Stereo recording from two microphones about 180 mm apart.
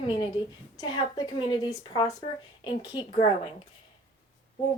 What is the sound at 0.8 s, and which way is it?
A woman's voice, 20° left (ahead or behind).